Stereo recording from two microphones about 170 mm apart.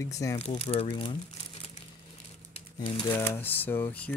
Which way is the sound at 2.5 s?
30° left (ahead or behind).